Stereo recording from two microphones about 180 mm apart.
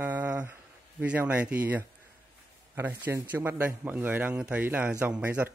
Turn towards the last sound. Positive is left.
turn(degrees=-5)  # may be behind; listen again after turning